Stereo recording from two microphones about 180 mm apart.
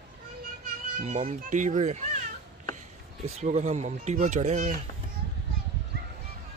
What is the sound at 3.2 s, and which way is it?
Speech, 35° right (ahead or behind).